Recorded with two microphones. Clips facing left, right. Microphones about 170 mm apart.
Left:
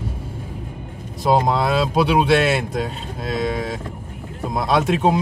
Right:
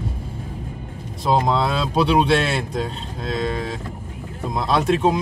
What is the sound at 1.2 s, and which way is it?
Speech, 5° left (ahead or behind).